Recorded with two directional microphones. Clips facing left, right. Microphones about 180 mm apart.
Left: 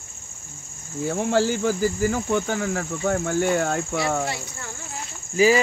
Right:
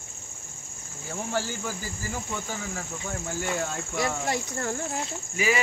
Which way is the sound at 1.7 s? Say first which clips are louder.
Left 13 dB; 65° left (ahead or behind).